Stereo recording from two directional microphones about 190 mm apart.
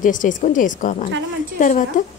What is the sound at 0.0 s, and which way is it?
A woman's voice, 45° left (ahead or behind).